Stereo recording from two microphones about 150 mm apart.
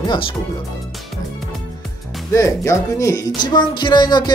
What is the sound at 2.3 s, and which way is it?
A woman's voice, 20° left (ahead or behind).